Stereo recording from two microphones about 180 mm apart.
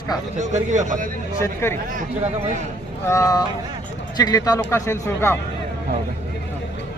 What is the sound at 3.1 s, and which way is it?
A man's voice, 20° left (ahead or behind).